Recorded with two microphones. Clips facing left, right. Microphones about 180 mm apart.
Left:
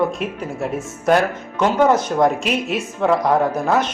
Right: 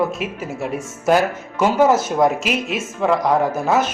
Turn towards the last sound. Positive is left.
turn(degrees=-5)  # may be behind; listen again after turning